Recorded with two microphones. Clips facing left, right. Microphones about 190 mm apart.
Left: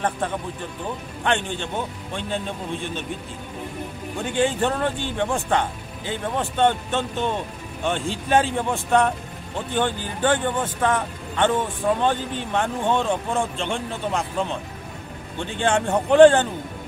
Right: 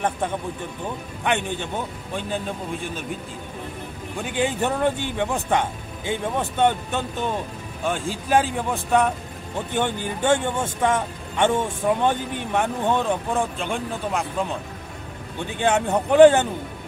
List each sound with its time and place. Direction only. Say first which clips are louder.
1.2 s a man's voice: even; 10° right (ahead or behind)
4.4 s a man's voice: left 1 dB; 10° right (ahead or behind)
9.8 s speech: left 1 dB; 10° right (ahead or behind)
15.6 s speech: even; 5° right (ahead or behind)